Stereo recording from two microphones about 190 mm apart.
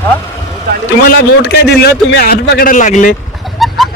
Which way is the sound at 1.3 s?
60° left (ahead or behind).